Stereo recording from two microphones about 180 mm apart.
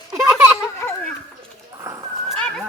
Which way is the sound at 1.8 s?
20° right (ahead or behind).